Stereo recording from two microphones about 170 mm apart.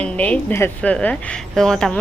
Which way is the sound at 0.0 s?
5° left (ahead or behind).